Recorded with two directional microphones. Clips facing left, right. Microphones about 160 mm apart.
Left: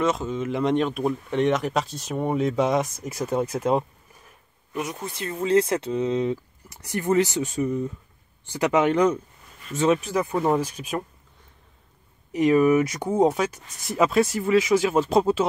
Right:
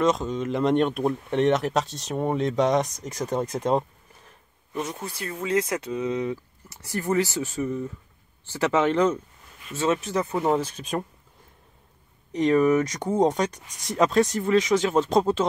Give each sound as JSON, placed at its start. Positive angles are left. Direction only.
{"t": 0.0, "sound": "speech", "side_deg": 5}
{"t": 5.0, "sound": "speech", "side_deg": 25}
{"t": 12.3, "sound": "speech", "side_deg": 10}